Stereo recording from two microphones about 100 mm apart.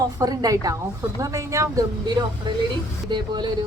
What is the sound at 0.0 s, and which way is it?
Speech, 35° right (ahead or behind).